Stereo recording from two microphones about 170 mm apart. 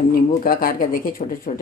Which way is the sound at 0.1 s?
55° left (ahead or behind).